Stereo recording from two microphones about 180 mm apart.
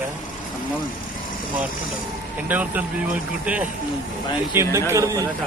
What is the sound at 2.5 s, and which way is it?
Speech, 10° right (ahead or behind).